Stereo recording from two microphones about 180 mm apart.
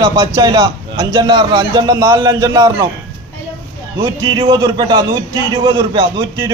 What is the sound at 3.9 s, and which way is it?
A man's voice, 25° right (ahead or behind).